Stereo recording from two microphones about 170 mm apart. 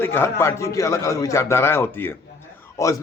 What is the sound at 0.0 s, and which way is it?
A man's voice, 15° left (ahead or behind).